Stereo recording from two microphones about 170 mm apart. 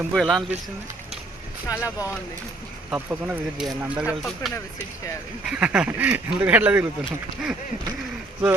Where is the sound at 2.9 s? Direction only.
10° right (ahead or behind).